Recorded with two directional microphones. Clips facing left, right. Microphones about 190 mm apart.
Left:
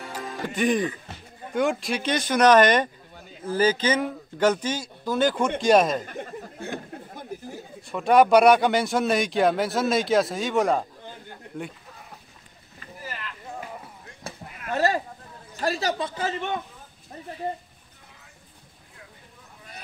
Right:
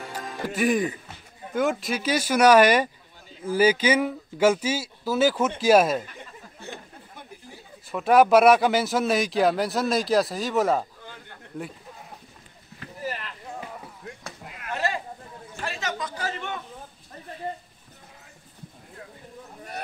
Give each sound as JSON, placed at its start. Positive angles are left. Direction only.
{"t": 0.0, "sound": "music", "side_deg": -5}
{"t": 1.5, "sound": "speech", "side_deg": 0}
{"t": 6.0, "sound": "a sound", "side_deg": 50}
{"t": 7.9, "sound": "speech", "side_deg": 0}
{"t": 14.7, "sound": "sheep", "side_deg": 40}
{"t": 15.6, "sound": "a man's voice", "side_deg": 35}